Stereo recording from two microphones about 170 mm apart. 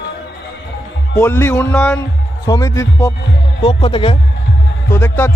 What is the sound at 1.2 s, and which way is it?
A man's voice, 15° left (ahead or behind).